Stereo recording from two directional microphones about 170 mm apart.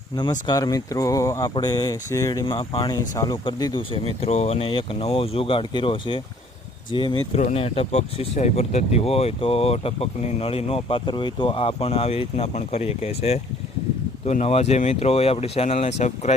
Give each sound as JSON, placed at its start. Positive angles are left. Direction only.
{"t": 0.2, "sound": "speech", "side_deg": 25}